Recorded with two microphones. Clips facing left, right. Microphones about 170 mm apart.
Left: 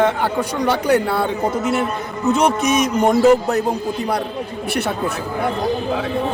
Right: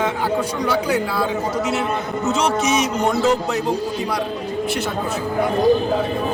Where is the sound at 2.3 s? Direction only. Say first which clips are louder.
Left 3 dB; 55° left (ahead or behind).